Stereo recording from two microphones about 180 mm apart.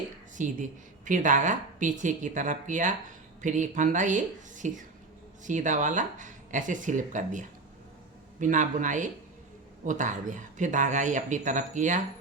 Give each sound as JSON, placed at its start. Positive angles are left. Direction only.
{"t": 0.4, "sound": "speech", "side_deg": -45}